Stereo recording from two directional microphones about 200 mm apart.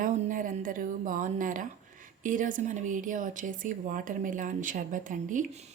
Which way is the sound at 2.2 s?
40° right (ahead or behind).